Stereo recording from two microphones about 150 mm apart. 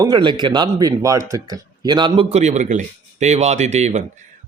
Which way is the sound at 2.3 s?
50° right (ahead or behind).